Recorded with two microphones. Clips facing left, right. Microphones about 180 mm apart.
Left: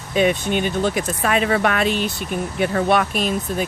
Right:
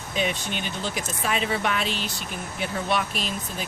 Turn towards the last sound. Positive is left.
turn(degrees=55)  # may be behind; listen again after turning